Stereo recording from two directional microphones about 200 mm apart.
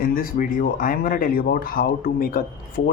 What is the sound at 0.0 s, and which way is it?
Speech, 45° left (ahead or behind).